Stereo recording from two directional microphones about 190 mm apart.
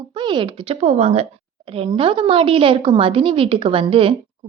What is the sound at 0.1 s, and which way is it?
A woman's voice, 25° right (ahead or behind).